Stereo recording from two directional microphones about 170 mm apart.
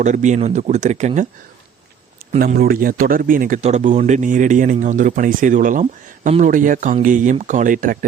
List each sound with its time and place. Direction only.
0.0 s speech: 45° right (ahead or behind)
2.6 s speech: 60° right (ahead or behind)
3.6 s speech: 40° right (ahead or behind)
5.8 s speech: 40° right (ahead or behind)